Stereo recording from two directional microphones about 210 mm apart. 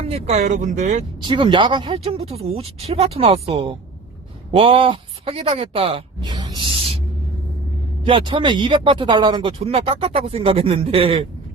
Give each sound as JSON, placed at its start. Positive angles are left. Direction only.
{"t": 0.0, "sound": "speech", "side_deg": -30}
{"t": 1.2, "sound": "speech", "side_deg": -20}
{"t": 6.6, "sound": "music", "side_deg": -25}
{"t": 8.0, "sound": "speech", "side_deg": -25}